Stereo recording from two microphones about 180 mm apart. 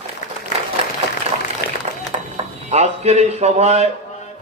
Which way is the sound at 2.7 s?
35° right (ahead or behind).